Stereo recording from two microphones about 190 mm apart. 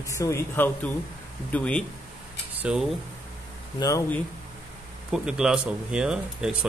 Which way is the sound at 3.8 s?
15° left (ahead or behind).